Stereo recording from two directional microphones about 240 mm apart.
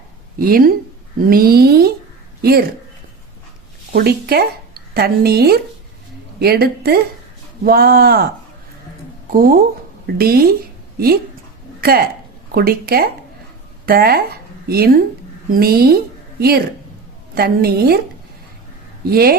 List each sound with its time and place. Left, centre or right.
0.3 s speech: right
3.9 s speech: right
9.3 s speech: right
15.4 s speech: right
19.0 s speech: right